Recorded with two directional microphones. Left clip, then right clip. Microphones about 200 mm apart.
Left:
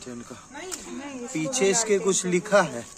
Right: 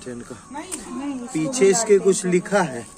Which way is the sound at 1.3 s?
20° left (ahead or behind).